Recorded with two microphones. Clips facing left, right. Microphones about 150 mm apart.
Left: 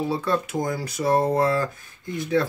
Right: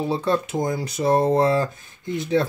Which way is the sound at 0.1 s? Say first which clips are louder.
Right 2 dB; 25° right (ahead or behind).